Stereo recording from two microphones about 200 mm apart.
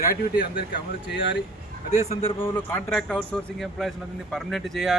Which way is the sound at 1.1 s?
65° left (ahead or behind).